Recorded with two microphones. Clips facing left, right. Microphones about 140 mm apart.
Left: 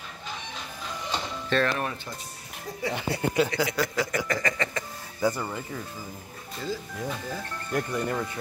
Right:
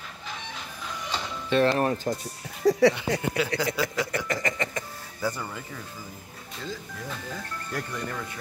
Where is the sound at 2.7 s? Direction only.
85° right.